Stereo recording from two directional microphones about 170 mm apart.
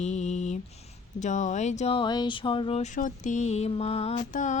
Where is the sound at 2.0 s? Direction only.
25° left (ahead or behind).